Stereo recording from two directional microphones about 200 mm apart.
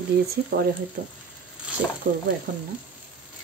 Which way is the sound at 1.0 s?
45° right (ahead or behind).